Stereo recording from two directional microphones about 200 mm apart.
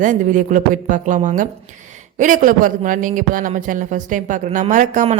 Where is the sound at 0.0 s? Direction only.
40° right (ahead or behind).